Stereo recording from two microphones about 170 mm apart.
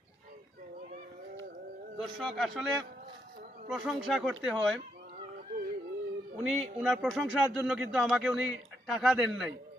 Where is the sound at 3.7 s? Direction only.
Centre (ahead or behind).